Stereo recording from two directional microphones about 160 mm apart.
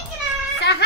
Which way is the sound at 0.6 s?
90° left.